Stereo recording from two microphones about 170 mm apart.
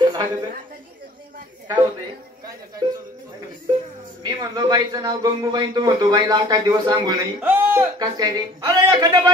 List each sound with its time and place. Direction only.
0.0 s a sound: 25° right (ahead or behind)
2.8 s music: 25° right (ahead or behind)
4.2 s speech: 25° right (ahead or behind)
7.4 s speech: 10° right (ahead or behind)
8.0 s speech: 25° right (ahead or behind)